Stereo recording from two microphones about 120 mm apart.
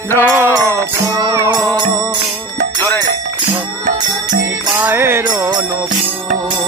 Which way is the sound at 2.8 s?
20° left (ahead or behind).